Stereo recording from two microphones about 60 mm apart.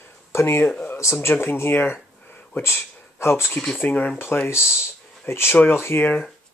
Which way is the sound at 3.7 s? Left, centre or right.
Left.